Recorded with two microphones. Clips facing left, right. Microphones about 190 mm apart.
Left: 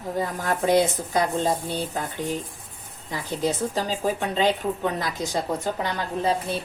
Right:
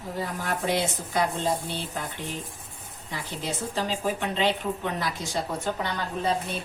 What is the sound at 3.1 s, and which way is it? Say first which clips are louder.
A woman's voice: left 7 dB; 40° left (ahead or behind).